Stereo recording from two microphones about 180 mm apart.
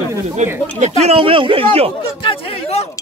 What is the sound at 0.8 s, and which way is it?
Speech, 35° right (ahead or behind).